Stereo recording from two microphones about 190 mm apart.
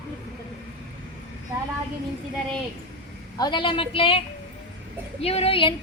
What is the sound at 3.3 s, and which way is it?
Female singing, 25° left (ahead or behind).